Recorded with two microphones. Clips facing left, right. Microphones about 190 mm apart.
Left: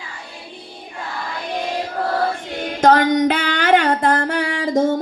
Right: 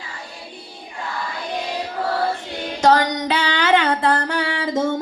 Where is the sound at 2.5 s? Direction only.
50° left (ahead or behind).